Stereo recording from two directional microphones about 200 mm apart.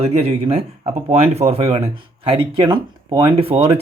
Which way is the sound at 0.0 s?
30° right (ahead or behind).